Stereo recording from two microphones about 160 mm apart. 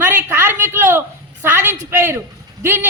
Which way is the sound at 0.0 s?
15° right (ahead or behind).